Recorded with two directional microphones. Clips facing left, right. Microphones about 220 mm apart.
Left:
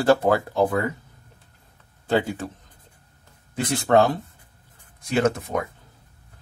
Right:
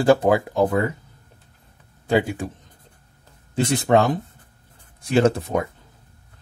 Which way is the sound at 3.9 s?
10° right (ahead or behind).